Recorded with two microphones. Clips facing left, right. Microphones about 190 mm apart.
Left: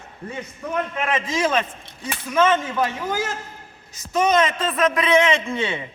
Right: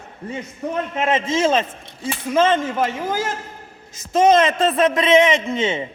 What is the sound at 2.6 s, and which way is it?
Speech, 45° right (ahead or behind).